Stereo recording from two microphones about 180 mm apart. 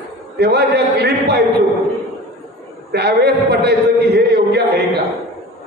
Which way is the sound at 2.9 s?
65° right (ahead or behind).